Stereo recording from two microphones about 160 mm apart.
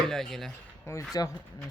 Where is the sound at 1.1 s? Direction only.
25° left (ahead or behind).